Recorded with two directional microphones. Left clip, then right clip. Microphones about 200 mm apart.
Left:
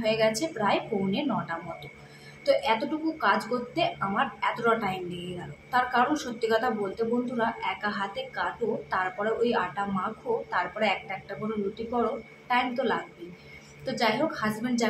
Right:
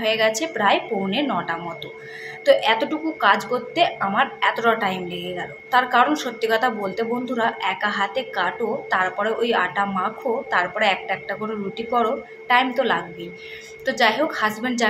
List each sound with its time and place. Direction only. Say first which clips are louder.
0.0 s a woman's voice: right 5 dB; 15° right (ahead or behind)